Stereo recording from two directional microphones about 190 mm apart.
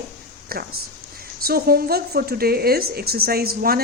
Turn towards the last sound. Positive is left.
turn(degrees=-50)  # may be behind; listen again after turning